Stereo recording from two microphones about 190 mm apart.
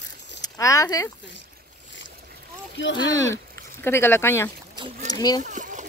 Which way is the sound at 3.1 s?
15° left (ahead or behind).